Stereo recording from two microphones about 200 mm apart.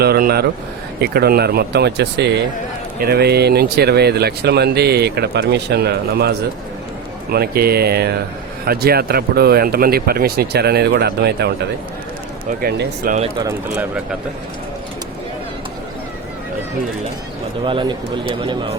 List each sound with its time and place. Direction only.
0.0 s speech: 50° right (ahead or behind)
17.7 s speech: 25° right (ahead or behind)